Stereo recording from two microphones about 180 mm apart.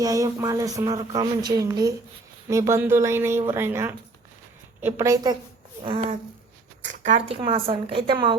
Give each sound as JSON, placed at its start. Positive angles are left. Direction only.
{"t": 0.0, "sound": "speech", "side_deg": -20}
{"t": 4.9, "sound": "speech", "side_deg": -20}